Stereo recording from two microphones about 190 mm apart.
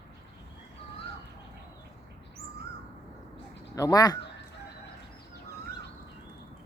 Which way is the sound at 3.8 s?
20° left (ahead or behind).